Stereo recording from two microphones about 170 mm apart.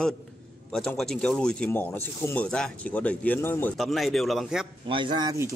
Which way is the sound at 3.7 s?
Centre (ahead or behind).